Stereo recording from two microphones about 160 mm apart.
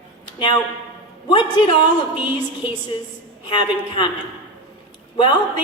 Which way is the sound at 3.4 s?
30° left (ahead or behind).